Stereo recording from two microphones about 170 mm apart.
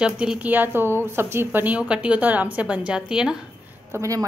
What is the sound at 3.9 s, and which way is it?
Speech, 20° right (ahead or behind).